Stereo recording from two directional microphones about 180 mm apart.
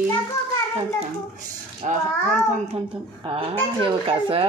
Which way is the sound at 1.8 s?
40° right (ahead or behind).